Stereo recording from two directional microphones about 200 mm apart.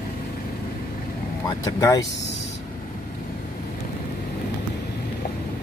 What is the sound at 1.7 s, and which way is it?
Speech, 20° left (ahead or behind).